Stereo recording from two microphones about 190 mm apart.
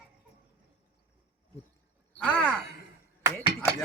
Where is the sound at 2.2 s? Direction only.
5° left (ahead or behind).